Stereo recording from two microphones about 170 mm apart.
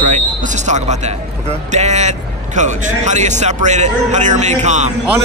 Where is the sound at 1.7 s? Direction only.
40° right (ahead or behind).